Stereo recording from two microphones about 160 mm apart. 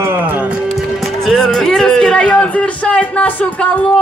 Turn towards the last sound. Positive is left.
turn(degrees=10)  # may be behind; listen again after turning